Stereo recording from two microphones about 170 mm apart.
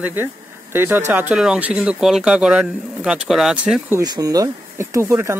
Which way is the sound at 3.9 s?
20° right (ahead or behind).